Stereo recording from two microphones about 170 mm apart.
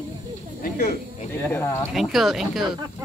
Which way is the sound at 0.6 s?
65° left (ahead or behind).